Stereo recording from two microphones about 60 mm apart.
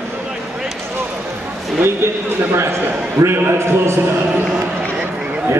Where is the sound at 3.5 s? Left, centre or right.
Right.